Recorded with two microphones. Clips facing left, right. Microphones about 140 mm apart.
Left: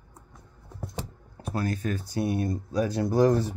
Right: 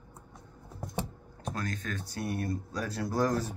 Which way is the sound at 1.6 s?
10° left (ahead or behind).